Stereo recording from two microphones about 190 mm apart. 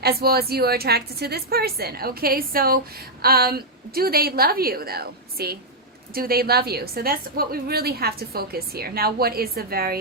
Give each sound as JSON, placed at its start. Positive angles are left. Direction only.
{"t": 0.0, "sound": "a woman's voice", "side_deg": -55}